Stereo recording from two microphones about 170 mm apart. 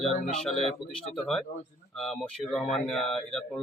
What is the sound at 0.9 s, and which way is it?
Speech, 5° left (ahead or behind).